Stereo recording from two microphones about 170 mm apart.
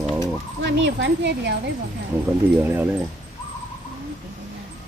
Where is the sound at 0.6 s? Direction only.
90° right.